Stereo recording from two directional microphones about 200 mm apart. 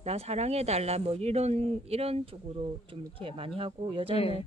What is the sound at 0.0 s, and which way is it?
Speech, 30° right (ahead or behind).